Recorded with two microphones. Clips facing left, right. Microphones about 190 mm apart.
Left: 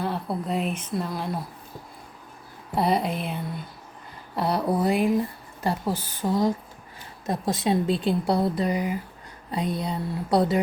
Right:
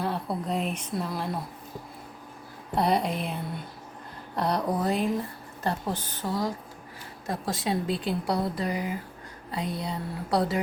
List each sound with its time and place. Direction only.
0.0 s speech: centre (ahead or behind)
2.7 s speech: centre (ahead or behind); by 10.6 s 20° left (ahead or behind)